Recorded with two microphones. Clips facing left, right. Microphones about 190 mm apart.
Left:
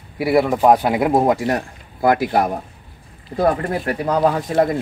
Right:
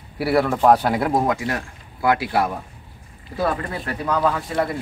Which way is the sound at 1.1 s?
25° left (ahead or behind).